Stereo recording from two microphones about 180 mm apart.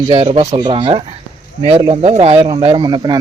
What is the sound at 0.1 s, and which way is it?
Speech, 30° right (ahead or behind).